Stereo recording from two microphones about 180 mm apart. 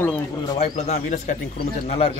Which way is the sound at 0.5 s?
35° left (ahead or behind).